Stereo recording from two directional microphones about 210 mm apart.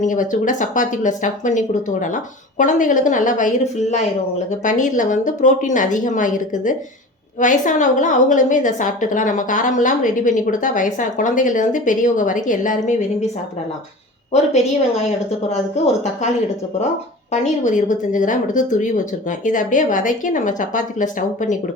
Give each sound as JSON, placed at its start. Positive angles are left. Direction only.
{"t": 0.0, "sound": "a woman's voice", "side_deg": 35}
{"t": 14.5, "sound": "a woman's voice", "side_deg": 30}
{"t": 17.3, "sound": "a woman's voice", "side_deg": 35}